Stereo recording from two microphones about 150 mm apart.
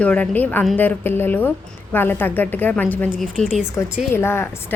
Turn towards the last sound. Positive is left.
turn(degrees=15)  # may be behind; listen again after turning